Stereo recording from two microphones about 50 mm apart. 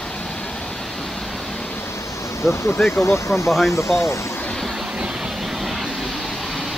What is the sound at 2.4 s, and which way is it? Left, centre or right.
Speech, left.